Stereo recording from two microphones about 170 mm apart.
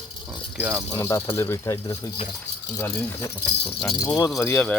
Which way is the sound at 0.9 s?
20° left (ahead or behind).